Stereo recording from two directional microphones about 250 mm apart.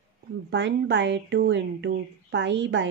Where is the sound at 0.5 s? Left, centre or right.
Right.